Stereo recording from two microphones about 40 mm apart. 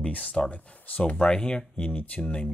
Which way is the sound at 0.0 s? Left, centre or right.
Left.